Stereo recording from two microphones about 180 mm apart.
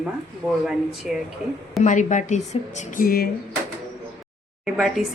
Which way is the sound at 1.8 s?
45° left (ahead or behind).